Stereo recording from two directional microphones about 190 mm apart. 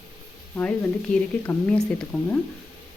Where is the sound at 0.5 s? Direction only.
5° left (ahead or behind).